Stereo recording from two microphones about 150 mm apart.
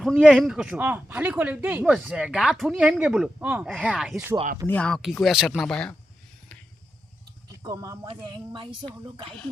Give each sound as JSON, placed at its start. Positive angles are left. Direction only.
{"t": 0.0, "sound": "speech", "side_deg": 5}
{"t": 4.6, "sound": "speech", "side_deg": 10}
{"t": 7.6, "sound": "speech", "side_deg": -25}